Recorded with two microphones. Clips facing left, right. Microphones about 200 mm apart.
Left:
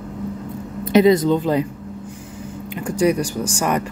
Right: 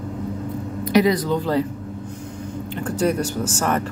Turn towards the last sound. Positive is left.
turn(degrees=10)  # may be behind; listen again after turning